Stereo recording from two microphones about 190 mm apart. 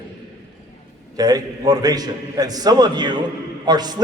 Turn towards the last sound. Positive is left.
turn(degrees=-20)  # may be behind; listen again after turning